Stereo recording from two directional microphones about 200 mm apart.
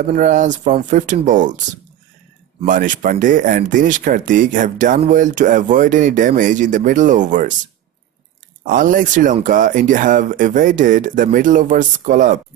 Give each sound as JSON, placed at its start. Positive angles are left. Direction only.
{"t": 0.1, "sound": "speech", "side_deg": -40}
{"t": 8.6, "sound": "speech", "side_deg": -45}